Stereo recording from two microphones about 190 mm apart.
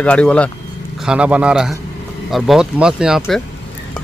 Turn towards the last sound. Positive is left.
turn(degrees=0)  # may be behind; listen again after turning